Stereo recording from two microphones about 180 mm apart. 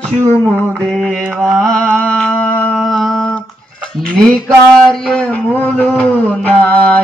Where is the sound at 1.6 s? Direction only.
5° left (ahead or behind).